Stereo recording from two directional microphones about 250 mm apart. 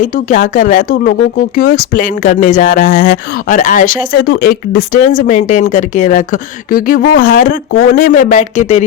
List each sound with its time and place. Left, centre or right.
0.0 s speech: left